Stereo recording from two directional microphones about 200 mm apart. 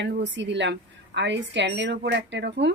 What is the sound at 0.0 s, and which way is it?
A woman's voice, 65° right (ahead or behind).